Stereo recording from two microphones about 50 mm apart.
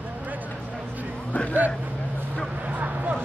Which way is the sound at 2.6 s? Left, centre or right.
Right.